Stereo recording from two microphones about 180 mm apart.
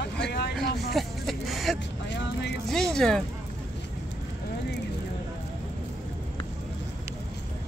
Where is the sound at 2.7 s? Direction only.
Centre (ahead or behind).